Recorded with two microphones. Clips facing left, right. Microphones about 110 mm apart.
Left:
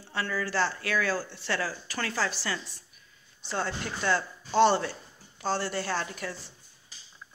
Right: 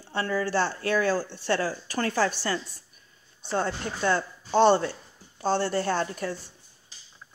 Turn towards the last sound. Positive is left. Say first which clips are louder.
# right 5 dB
turn(degrees=-30)  # may be behind; listen again after turning